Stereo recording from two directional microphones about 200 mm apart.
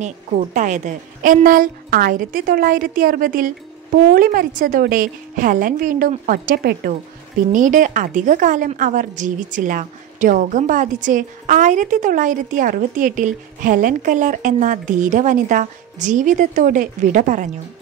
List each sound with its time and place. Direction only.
0.0 s a woman's voice: 35° right (ahead or behind)